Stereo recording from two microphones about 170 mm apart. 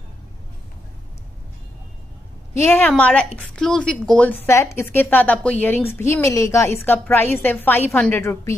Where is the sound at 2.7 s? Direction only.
10° left (ahead or behind).